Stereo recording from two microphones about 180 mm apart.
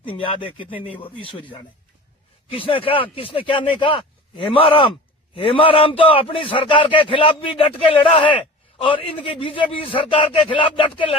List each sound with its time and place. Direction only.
0.0 s a man's voice: 30° left (ahead or behind)